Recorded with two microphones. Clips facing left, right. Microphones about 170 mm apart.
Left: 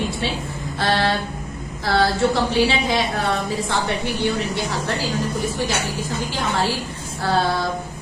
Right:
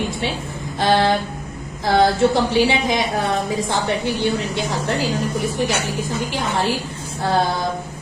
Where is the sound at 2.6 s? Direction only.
15° right (ahead or behind).